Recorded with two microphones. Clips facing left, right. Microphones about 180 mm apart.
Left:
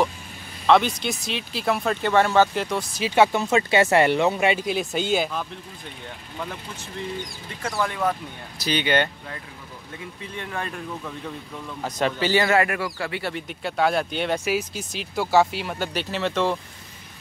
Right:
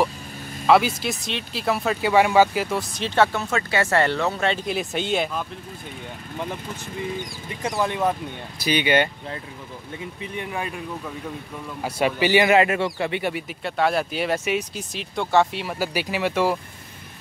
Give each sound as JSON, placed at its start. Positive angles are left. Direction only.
{"t": 0.7, "sound": "speech", "side_deg": -5}
{"t": 4.6, "sound": "speech", "side_deg": 0}
{"t": 7.6, "sound": "speech", "side_deg": -20}
{"t": 8.6, "sound": "speech", "side_deg": -10}
{"t": 10.3, "sound": "speech", "side_deg": -10}
{"t": 11.8, "sound": "speech", "side_deg": -10}
{"t": 13.3, "sound": "speech", "side_deg": 0}